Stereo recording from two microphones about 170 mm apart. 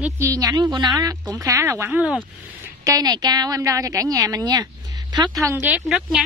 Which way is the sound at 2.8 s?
20° right (ahead or behind).